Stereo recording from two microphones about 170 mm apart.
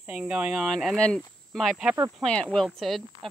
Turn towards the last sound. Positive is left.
turn(degrees=0)  # may be behind; listen again after turning